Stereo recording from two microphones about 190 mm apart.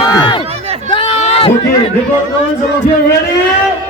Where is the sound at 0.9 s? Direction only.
30° left (ahead or behind).